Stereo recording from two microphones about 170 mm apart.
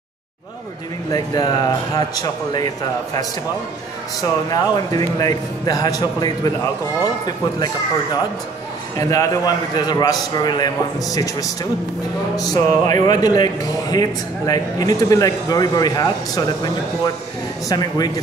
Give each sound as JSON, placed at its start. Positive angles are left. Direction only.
{"t": 1.1, "sound": "speech", "side_deg": 20}
{"t": 4.2, "sound": "speech", "side_deg": 20}